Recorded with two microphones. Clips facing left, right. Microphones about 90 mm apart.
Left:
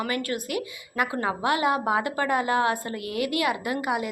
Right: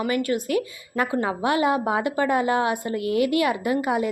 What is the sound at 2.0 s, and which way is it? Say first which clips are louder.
A woman's voice: right 3 dB; 25° right (ahead or behind).